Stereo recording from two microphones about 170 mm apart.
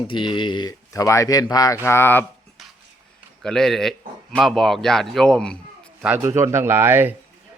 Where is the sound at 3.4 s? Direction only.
5° left (ahead or behind).